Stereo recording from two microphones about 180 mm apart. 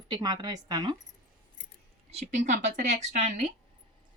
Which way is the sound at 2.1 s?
40° right (ahead or behind).